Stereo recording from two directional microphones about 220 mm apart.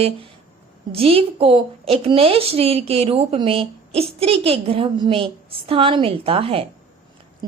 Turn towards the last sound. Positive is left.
turn(degrees=-25)  # may be behind; listen again after turning